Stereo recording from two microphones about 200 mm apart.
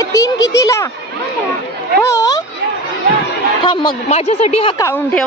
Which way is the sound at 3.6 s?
25° left (ahead or behind).